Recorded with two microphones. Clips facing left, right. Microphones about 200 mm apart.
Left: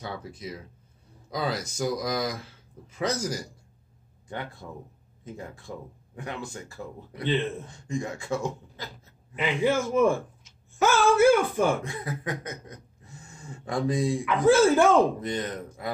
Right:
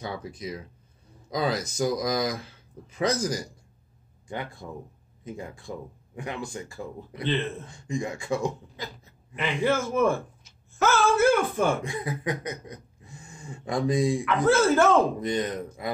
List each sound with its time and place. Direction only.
0.0 s speech: 15° right (ahead or behind)
9.3 s a man's voice: 15° left (ahead or behind)
11.8 s speech: 15° right (ahead or behind)
14.2 s a man's voice: 15° left (ahead or behind)
15.1 s speech: 15° right (ahead or behind)